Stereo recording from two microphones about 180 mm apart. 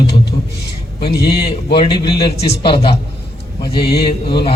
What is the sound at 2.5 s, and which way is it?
Speech, 30° left (ahead or behind).